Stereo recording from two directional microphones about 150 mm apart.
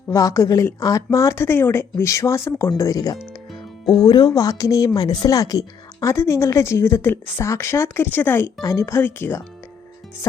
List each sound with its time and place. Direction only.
0.1 s a woman's voice: 20° left (ahead or behind)